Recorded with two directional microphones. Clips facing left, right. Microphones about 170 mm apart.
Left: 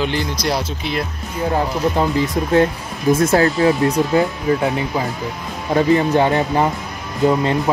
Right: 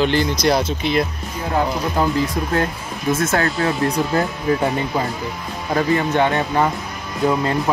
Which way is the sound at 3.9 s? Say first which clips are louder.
Left 3 dB; centre (ahead or behind).